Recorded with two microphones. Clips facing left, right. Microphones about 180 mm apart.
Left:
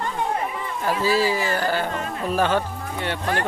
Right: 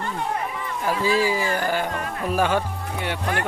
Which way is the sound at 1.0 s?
15° right (ahead or behind).